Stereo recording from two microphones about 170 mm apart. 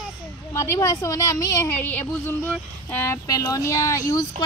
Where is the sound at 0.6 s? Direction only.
15° left (ahead or behind).